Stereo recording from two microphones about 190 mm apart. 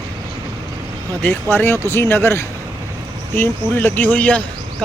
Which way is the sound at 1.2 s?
10° left (ahead or behind).